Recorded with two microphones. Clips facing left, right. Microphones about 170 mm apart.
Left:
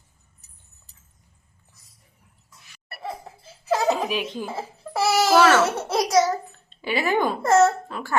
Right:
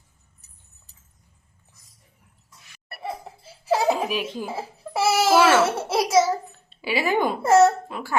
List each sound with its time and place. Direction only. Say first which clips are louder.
3.7 s speech: right 1 dB; 10° right (ahead or behind)
5.0 s a child's voice: even; 25° right (ahead or behind)
5.3 s a child's voice: even; 5° right (ahead or behind)